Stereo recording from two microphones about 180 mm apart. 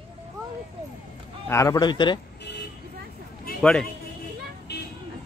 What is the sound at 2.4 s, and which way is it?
Vehicle, 70° left (ahead or behind).